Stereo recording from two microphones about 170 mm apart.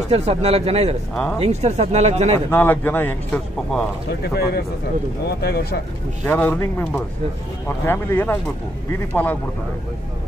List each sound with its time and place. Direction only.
0.1 s speech: 40° right (ahead or behind)
2.5 s a man's voice: 10° left (ahead or behind)
4.2 s speech: 70° left (ahead or behind)
6.2 s a man's voice: 10° left (ahead or behind)